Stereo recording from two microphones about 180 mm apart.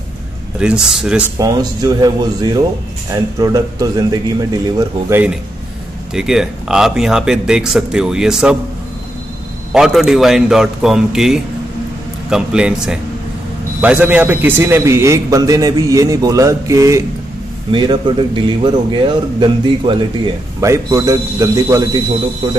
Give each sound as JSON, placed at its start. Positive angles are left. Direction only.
{"t": 0.6, "sound": "a man's voice", "side_deg": -5}
{"t": 1.4, "sound": "a man's voice", "side_deg": -20}
{"t": 6.1, "sound": "a man's voice", "side_deg": -5}
{"t": 9.7, "sound": "a man's voice", "side_deg": -5}